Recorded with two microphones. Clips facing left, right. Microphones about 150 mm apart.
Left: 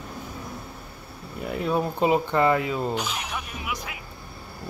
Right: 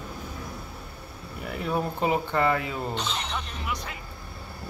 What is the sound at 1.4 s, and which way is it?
Speech, 20° left (ahead or behind).